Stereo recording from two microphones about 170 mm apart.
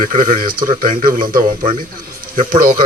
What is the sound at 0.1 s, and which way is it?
Speech, 55° right (ahead or behind).